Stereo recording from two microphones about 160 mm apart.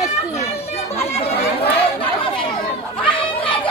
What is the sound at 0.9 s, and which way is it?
Chatter, 40° left (ahead or behind).